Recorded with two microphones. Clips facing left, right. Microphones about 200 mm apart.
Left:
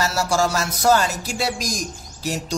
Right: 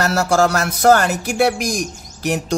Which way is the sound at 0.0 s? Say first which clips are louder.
Right 5 dB; 60° right (ahead or behind).